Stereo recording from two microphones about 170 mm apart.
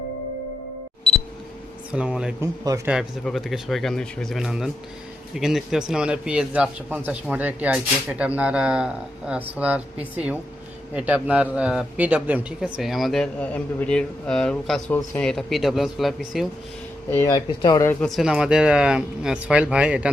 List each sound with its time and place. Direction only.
1.9 s speech: 5° right (ahead or behind)
2.4 s a man's voice: 20° right (ahead or behind)
2.9 s a man's voice: centre (ahead or behind)
17.1 s speech: 15° left (ahead or behind)
17.3 s speech: 25° left (ahead or behind)
17.8 s speech: centre (ahead or behind)